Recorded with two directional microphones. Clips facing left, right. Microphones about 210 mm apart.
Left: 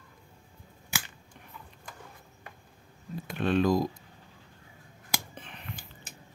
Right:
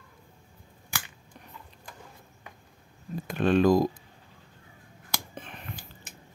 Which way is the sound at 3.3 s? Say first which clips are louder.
Right 4 dB; 45° right (ahead or behind).